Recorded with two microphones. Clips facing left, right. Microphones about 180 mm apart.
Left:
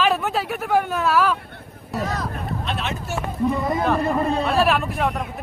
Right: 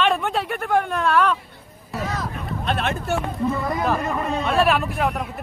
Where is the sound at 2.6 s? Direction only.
55° right (ahead or behind).